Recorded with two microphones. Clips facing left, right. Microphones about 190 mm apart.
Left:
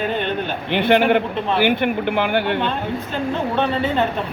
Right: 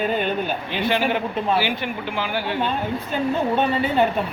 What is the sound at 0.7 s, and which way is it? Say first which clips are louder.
Speech: left 8 dB; 60° left (ahead or behind).